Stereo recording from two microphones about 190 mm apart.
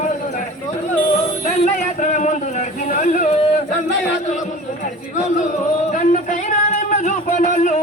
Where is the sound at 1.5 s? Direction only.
40° left (ahead or behind).